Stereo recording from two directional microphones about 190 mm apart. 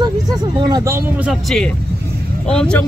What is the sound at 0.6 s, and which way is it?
Speech, 20° right (ahead or behind).